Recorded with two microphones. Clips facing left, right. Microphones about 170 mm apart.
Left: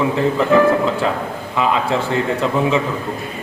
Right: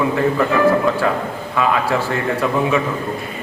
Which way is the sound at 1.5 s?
20° left (ahead or behind).